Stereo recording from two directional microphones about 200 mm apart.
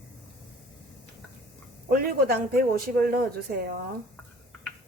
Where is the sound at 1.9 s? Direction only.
50° right (ahead or behind).